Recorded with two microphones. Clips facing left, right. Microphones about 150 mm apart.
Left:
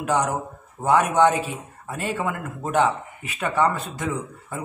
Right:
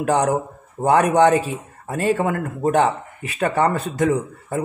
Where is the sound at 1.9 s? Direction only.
45° right (ahead or behind).